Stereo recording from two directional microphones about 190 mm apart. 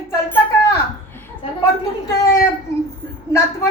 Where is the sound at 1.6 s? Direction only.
15° left (ahead or behind).